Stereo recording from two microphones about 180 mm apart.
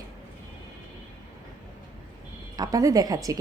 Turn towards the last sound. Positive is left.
turn(degrees=-20)  # may be behind; listen again after turning